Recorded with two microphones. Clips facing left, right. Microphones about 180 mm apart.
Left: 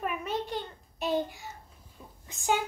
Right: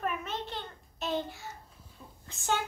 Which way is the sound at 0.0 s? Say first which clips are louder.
Left 2 dB; 10° left (ahead or behind).